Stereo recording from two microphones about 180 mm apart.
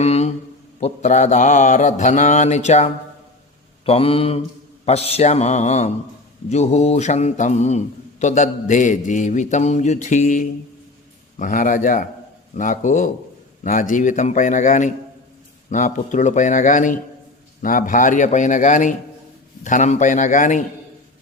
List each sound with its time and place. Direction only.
0.0 s a sound: 35° left (ahead or behind)
0.8 s mantra: 40° left (ahead or behind)
8.2 s speech: 40° left (ahead or behind)